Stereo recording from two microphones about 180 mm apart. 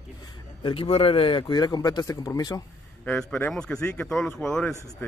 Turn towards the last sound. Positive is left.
turn(degrees=5)  # may be behind; listen again after turning